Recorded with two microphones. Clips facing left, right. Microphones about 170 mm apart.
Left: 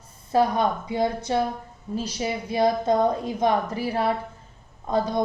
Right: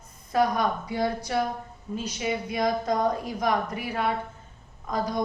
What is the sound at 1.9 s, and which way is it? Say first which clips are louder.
A woman's voice: left 2 dB; 35° left (ahead or behind).